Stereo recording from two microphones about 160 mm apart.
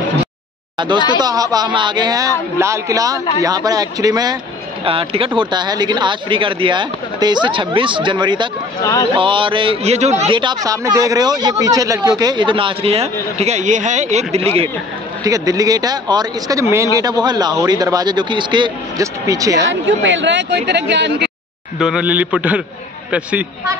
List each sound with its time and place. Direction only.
0.7 s speech: 30° right (ahead or behind)
4.8 s a man's voice: 35° right (ahead or behind)
15.2 s speech: 20° right (ahead or behind)
20.2 s speech: 90° right
21.7 s a man's voice: 5° right (ahead or behind)